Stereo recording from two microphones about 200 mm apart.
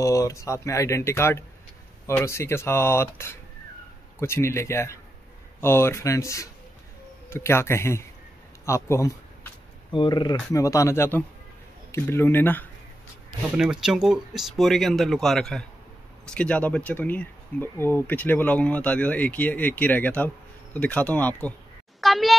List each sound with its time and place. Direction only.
0.0 s speech: 15° left (ahead or behind)
13.6 s speech: 5° right (ahead or behind)
22.0 s a sound: centre (ahead or behind)